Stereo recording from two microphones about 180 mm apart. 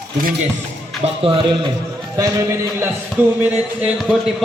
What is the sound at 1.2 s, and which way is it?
Speech, 30° right (ahead or behind).